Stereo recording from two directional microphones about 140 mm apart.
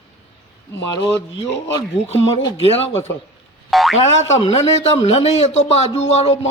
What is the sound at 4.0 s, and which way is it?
A man's voice, 50° left (ahead or behind).